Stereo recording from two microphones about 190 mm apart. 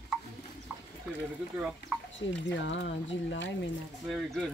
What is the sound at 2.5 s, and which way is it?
Speech, 70° left (ahead or behind).